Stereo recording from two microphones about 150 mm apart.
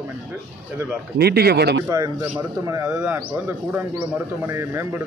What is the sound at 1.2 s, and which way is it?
Speech, 90° right.